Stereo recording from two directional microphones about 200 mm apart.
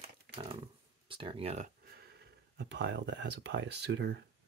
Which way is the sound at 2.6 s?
55° right (ahead or behind).